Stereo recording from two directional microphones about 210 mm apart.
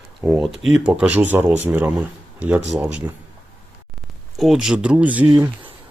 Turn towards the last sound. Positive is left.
turn(degrees=-20)  # may be behind; listen again after turning